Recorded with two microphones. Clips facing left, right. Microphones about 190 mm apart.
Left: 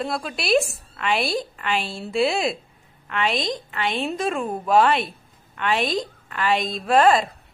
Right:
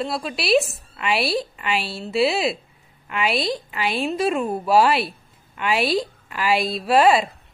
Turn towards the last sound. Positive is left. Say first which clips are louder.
# right 1 dB
turn(degrees=-5)  # may be behind; listen again after turning